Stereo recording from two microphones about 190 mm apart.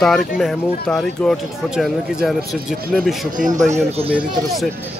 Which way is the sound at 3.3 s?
40° right (ahead or behind).